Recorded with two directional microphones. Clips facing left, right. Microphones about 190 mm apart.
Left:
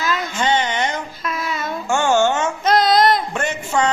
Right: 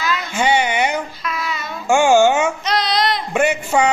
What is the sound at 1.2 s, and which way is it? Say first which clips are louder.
Child singing: left 1 dB; 45° left (ahead or behind).